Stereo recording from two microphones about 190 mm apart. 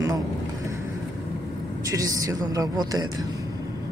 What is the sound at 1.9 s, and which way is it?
Speech, 20° right (ahead or behind).